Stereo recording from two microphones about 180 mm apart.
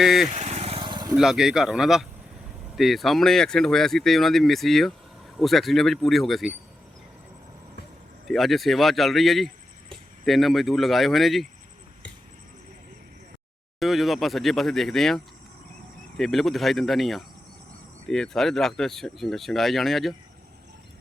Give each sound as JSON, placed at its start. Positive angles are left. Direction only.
{"t": 0.0, "sound": "speech", "side_deg": 0}
{"t": 0.3, "sound": "vehicle", "side_deg": -40}
{"t": 1.1, "sound": "speech", "side_deg": -5}
{"t": 8.3, "sound": "speech", "side_deg": 0}
{"t": 13.7, "sound": "speech", "side_deg": 0}